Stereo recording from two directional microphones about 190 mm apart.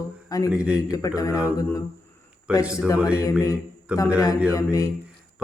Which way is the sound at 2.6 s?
5° right (ahead or behind).